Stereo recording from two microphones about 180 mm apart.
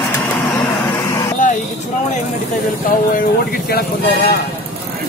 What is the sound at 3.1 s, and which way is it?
Speech, 50° left (ahead or behind).